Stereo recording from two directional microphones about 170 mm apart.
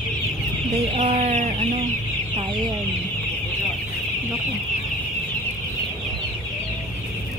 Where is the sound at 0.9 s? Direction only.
45° right (ahead or behind).